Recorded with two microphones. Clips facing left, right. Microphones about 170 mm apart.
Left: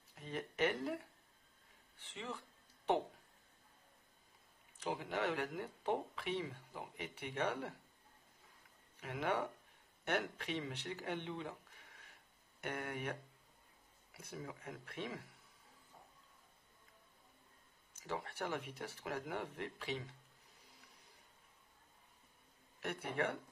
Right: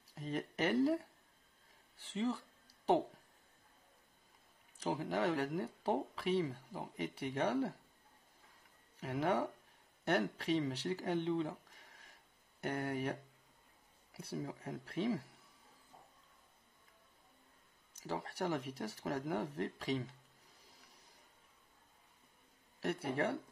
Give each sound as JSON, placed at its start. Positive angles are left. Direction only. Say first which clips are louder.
{"t": 0.1, "sound": "a sound", "louder": "right 4 dB", "side_deg": -40}
{"t": 4.7, "sound": "speech", "louder": "right 4 dB", "side_deg": -40}
{"t": 9.0, "sound": "speech", "louder": "right 4 dB", "side_deg": -35}
{"t": 17.9, "sound": "speech", "louder": "right 2 dB", "side_deg": -35}
{"t": 22.8, "sound": "speech", "louder": "right 3 dB", "side_deg": -35}